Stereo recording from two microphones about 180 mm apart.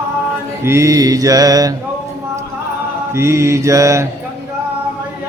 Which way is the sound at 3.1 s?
15° right (ahead or behind).